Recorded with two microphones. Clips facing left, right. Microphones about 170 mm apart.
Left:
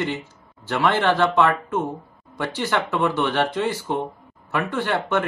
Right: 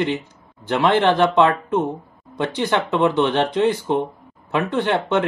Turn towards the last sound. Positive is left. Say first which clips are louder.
# right 3 dB
turn(degrees=-20)  # may be behind; listen again after turning